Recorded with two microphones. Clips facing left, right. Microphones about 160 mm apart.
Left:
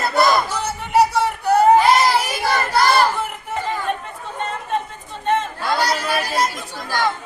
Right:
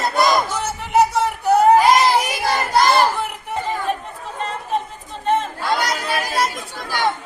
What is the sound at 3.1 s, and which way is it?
Chatter, centre (ahead or behind).